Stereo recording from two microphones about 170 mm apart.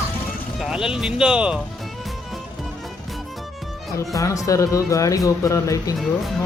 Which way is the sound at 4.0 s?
20° left (ahead or behind).